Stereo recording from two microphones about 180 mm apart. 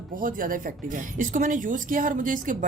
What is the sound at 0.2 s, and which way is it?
A woman's voice, 50° right (ahead or behind).